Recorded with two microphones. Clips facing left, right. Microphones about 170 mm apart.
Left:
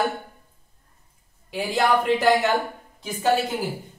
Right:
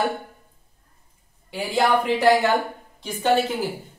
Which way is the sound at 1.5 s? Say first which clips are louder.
Right 1 dB; centre (ahead or behind).